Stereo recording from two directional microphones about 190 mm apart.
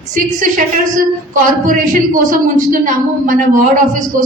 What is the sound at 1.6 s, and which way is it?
A woman's voice, 45° right (ahead or behind).